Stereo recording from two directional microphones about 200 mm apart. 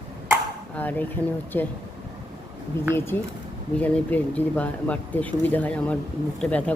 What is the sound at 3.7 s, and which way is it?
Speech, 5° left (ahead or behind).